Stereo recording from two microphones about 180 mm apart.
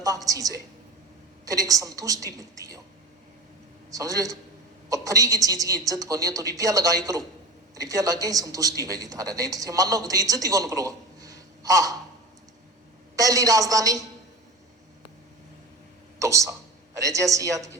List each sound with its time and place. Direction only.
0.0 s speech: 20° right (ahead or behind)
3.9 s speech: 20° right (ahead or behind)
13.1 s speech: 20° right (ahead or behind)
16.1 s a woman's voice: 15° right (ahead or behind)